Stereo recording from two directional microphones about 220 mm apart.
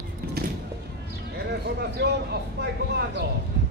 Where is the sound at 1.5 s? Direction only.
50° right (ahead or behind).